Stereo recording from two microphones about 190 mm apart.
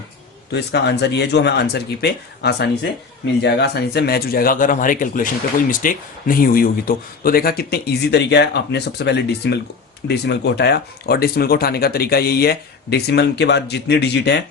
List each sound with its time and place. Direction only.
0.5 s speech: 60° left (ahead or behind)